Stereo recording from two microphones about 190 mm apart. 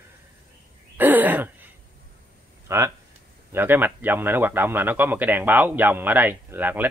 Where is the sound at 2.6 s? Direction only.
15° right (ahead or behind).